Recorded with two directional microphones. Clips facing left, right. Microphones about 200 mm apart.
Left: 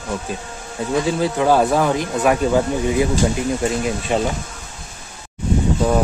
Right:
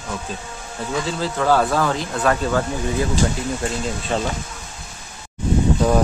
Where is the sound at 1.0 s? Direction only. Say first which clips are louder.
Left 2 dB; 15° left (ahead or behind).